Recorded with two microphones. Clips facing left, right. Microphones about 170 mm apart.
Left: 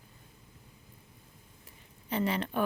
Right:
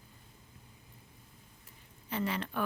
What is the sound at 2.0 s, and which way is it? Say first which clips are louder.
Speech: left 4 dB; 20° left (ahead or behind).